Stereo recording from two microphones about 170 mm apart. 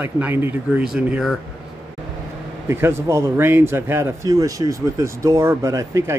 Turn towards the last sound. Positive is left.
turn(degrees=-20)  # may be behind; listen again after turning